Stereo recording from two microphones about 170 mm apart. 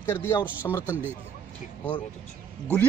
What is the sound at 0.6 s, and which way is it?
Speech, 20° left (ahead or behind).